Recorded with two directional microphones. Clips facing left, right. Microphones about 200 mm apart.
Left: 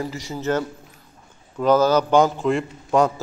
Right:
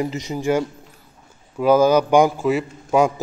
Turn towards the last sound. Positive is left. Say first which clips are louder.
# right 1 dB
turn(degrees=-5)  # may be behind; listen again after turning